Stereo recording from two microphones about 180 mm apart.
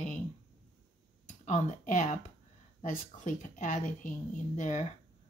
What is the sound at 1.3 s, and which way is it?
Speech, 45° left (ahead or behind).